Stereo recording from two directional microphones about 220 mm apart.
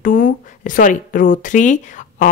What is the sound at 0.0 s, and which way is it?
Speech, 40° left (ahead or behind).